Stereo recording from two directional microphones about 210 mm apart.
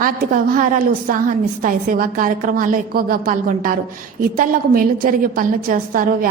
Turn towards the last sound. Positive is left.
turn(degrees=-40)  # may be behind; listen again after turning